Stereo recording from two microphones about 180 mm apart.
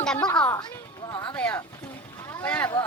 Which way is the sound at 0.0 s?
5° left (ahead or behind).